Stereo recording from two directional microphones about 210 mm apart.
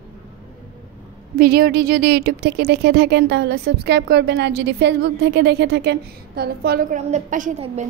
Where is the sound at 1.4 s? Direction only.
45° right (ahead or behind).